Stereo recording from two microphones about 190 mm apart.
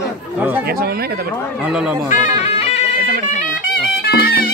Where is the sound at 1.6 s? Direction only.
5° right (ahead or behind).